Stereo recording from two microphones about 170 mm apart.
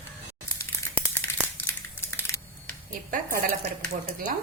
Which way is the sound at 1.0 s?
10° left (ahead or behind).